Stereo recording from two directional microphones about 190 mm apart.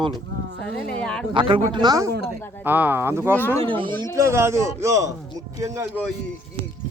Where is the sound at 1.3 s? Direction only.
25° right (ahead or behind).